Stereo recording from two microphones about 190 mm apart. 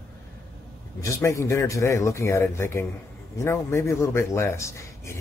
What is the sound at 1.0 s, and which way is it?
Speech, 15° left (ahead or behind).